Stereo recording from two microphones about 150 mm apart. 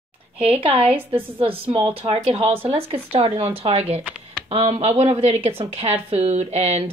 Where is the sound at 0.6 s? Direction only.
35° right (ahead or behind).